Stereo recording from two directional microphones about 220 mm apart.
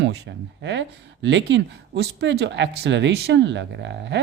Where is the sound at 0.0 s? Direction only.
55° right (ahead or behind).